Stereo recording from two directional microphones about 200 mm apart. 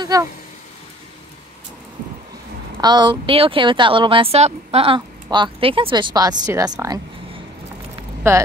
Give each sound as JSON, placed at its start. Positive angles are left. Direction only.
{"t": 0.0, "sound": "speech", "side_deg": -20}
{"t": 2.8, "sound": "speech", "side_deg": -20}
{"t": 8.2, "sound": "speech", "side_deg": -10}